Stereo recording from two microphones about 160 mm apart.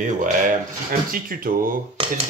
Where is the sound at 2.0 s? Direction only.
35° right (ahead or behind).